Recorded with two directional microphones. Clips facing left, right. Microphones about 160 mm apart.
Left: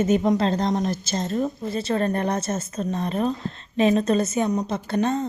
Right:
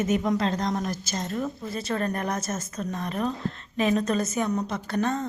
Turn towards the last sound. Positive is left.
turn(degrees=25)  # may be behind; listen again after turning